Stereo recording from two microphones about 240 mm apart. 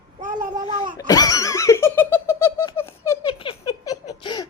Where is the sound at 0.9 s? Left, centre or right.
Centre.